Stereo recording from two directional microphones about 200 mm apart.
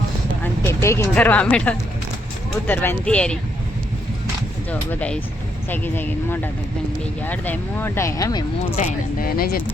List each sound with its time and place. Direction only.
0.4 s speech: 15° left (ahead or behind)
4.7 s speech: 5° left (ahead or behind)
8.7 s speech: 40° left (ahead or behind)